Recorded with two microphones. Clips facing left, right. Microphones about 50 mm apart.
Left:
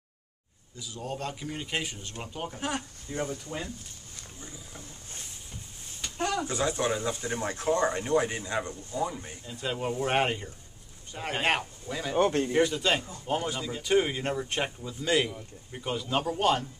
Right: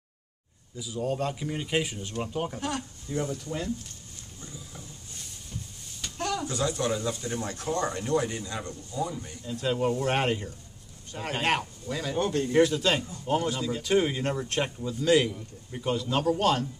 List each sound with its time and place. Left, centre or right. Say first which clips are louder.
0.7 s a man's voice: right 6 dB; centre
2.6 s speech: right 1 dB; left
3.4 s a man's voice: right 4 dB; centre
4.4 s a sound: right 2 dB; centre
5.1 s speech: right 3 dB; left
9.5 s a man's voice: right 5 dB; centre
12.2 s speech: left 3 dB; left
12.5 s a man's voice: right 3 dB; centre